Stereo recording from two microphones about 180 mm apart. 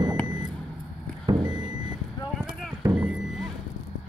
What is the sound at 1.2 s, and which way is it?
Vehicle, 25° right (ahead or behind).